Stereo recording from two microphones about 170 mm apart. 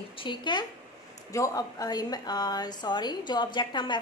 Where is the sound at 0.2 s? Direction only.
30° left (ahead or behind).